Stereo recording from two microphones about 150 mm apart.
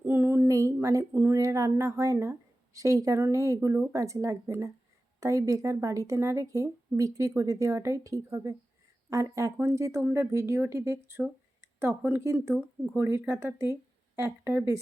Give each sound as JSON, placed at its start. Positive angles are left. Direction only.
{"t": 0.0, "sound": "a sound", "side_deg": -10}
{"t": 1.1, "sound": "speech", "side_deg": -15}
{"t": 12.5, "sound": "speech", "side_deg": 5}
{"t": 13.0, "sound": "speech", "side_deg": -20}